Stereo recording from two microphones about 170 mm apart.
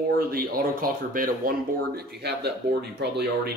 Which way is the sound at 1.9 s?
75° right (ahead or behind).